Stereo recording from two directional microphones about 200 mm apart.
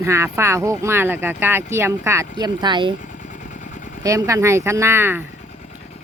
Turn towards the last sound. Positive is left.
turn(degrees=-10)  # may be behind; listen again after turning